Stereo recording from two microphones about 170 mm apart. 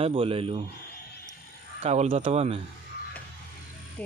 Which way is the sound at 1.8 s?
40° right (ahead or behind).